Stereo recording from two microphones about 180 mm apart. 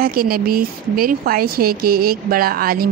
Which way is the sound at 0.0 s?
55° right (ahead or behind).